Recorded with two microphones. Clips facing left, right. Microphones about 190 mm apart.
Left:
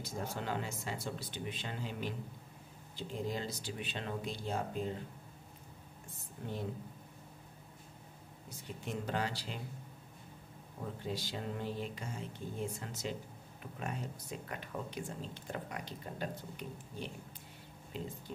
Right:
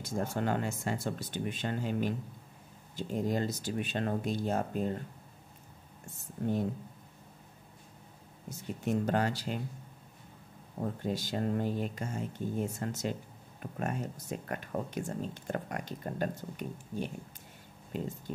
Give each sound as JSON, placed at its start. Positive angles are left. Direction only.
{"t": 0.0, "sound": "speech", "side_deg": -50}
{"t": 8.5, "sound": "speech", "side_deg": -45}
{"t": 10.8, "sound": "speech", "side_deg": -45}